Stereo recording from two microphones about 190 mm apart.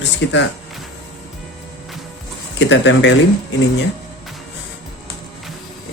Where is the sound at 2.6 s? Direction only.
70° left (ahead or behind).